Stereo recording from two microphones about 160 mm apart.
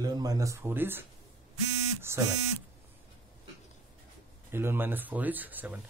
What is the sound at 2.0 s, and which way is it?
Buzzer, 15° right (ahead or behind).